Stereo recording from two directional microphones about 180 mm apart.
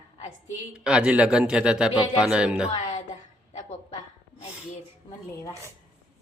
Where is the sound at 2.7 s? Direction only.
40° left (ahead or behind).